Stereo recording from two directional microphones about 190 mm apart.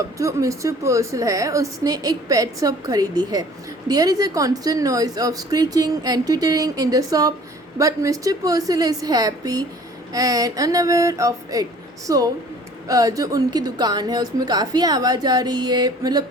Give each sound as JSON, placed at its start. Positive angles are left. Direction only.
{"t": 0.2, "sound": "a woman's voice", "side_deg": -15}